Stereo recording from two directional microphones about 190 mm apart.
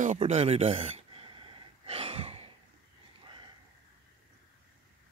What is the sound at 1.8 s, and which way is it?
Breathing, 30° right (ahead or behind).